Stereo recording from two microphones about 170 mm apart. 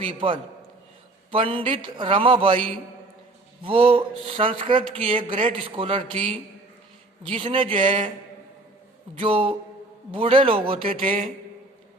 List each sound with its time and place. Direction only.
0.0 s speech: 30° right (ahead or behind)
3.6 s speech: 30° right (ahead or behind)
9.1 s speech: 30° right (ahead or behind)